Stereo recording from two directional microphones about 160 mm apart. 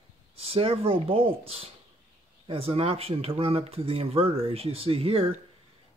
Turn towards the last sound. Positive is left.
turn(degrees=-35)  # may be behind; listen again after turning